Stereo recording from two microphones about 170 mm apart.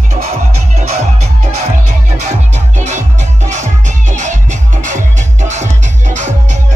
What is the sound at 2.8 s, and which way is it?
Music, 45° right (ahead or behind).